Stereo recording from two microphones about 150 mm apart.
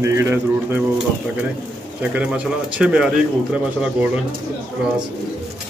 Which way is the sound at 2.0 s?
5° right (ahead or behind).